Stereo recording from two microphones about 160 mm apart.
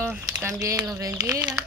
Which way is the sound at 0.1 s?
15° right (ahead or behind).